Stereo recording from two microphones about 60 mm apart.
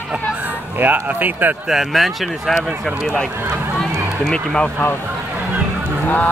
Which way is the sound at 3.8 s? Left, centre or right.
Centre.